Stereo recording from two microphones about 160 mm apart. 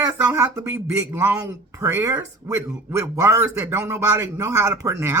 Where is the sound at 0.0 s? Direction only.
20° right (ahead or behind).